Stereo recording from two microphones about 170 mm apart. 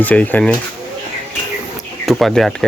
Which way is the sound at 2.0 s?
Centre (ahead or behind).